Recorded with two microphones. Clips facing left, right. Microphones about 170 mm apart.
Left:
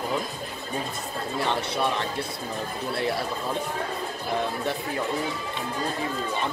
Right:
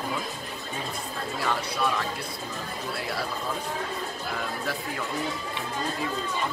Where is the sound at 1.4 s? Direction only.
25° left (ahead or behind).